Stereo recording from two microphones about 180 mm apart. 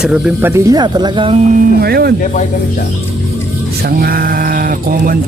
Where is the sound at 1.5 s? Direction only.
55° right (ahead or behind).